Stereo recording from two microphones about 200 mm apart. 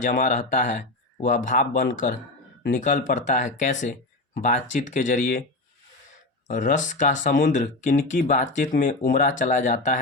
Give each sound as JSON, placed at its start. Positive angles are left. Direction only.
{"t": 0.0, "sound": "speech", "side_deg": 40}
{"t": 6.5, "sound": "speech", "side_deg": 40}